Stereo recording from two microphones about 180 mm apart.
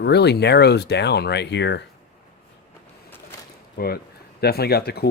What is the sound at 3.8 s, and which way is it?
Speech, 55° left (ahead or behind).